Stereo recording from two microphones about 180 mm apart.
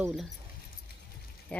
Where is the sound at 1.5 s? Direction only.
5° left (ahead or behind).